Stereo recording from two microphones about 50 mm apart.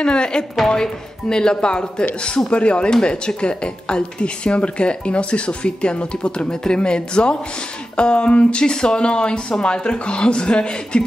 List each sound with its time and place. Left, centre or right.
0.0 s a woman's voice: centre